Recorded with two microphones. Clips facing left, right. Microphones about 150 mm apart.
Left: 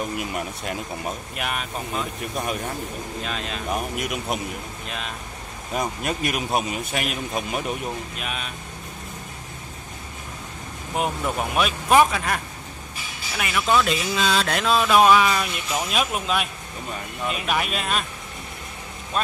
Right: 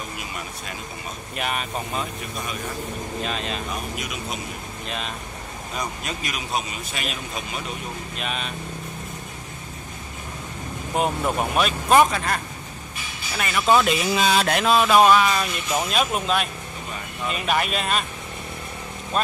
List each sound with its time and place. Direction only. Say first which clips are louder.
1.3 s speech: right 2 dB; centre (ahead or behind)
3.3 s speech: right 2 dB; centre (ahead or behind)
3.9 s a man's voice: left 4 dB; 55° left (ahead or behind)
4.8 s speech: right 3 dB; centre (ahead or behind)
5.8 s speech: left 5 dB; 50° left (ahead or behind)
8.2 s speech: right 2 dB; 5° left (ahead or behind)
11.5 s speech: even; 5° left (ahead or behind)
13.4 s speech: even; 5° left (ahead or behind)
13.8 s speech: right 2 dB; 15° right (ahead or behind)
19.1 s speech: right 1 dB; centre (ahead or behind)